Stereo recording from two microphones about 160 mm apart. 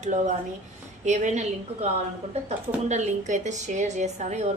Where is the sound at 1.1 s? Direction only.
50° right (ahead or behind).